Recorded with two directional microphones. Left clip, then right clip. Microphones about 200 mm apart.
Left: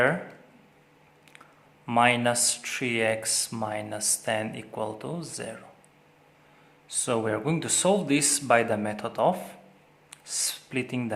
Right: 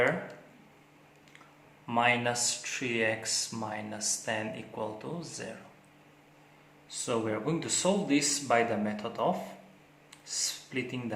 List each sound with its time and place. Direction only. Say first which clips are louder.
1.9 s speech: left 5 dB; 50° left (ahead or behind)
6.8 s speech: left 5 dB; 55° left (ahead or behind)